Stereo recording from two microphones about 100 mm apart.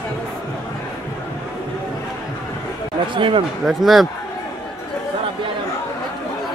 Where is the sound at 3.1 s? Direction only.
60° right (ahead or behind).